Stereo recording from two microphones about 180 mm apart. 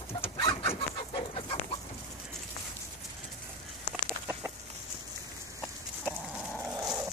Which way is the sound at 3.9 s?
10° right (ahead or behind).